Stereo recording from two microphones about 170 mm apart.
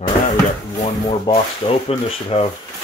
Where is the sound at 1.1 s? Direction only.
35° left (ahead or behind).